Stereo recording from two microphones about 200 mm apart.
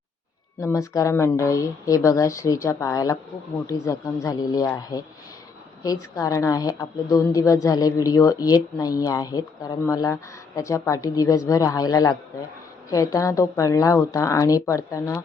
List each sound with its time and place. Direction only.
0.6 s a woman's voice: 15° left (ahead or behind)